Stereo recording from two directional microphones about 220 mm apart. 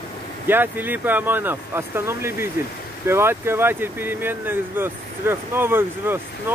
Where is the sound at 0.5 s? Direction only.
10° right (ahead or behind).